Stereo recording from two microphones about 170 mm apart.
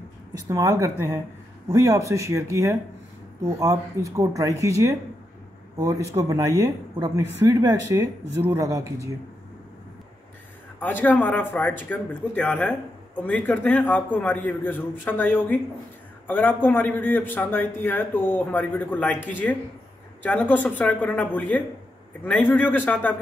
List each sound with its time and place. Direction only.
0.5 s speech: 20° right (ahead or behind)
10.8 s speech: 10° left (ahead or behind)